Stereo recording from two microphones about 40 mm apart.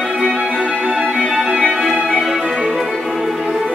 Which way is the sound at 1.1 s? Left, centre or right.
Centre.